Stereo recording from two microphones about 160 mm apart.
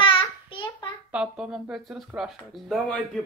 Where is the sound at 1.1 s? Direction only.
5° right (ahead or behind).